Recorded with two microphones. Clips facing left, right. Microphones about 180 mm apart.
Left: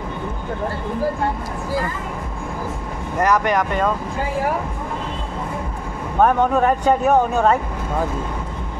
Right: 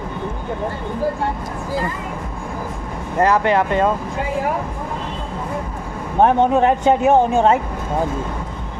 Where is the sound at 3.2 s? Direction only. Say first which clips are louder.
Right 2 dB; 25° right (ahead or behind).